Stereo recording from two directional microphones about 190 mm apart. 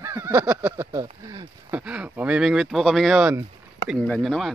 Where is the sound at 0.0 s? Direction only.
15° right (ahead or behind).